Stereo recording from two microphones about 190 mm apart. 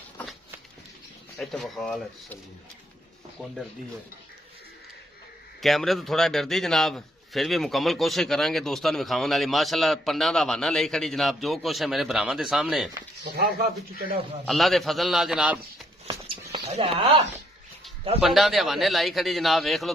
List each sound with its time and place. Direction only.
1.4 s a man's voice: centre (ahead or behind)
5.6 s a man's voice: centre (ahead or behind)
13.2 s a man's voice: 55° right (ahead or behind)
14.4 s a man's voice: centre (ahead or behind)
16.1 s a sound: 25° right (ahead or behind)
18.2 s a man's voice: centre (ahead or behind)